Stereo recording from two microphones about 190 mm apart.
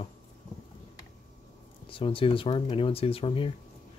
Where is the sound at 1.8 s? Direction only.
25° left (ahead or behind).